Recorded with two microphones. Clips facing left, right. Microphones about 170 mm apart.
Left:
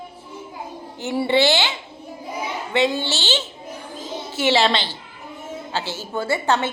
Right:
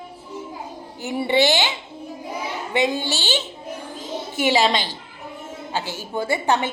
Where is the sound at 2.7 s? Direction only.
15° right (ahead or behind).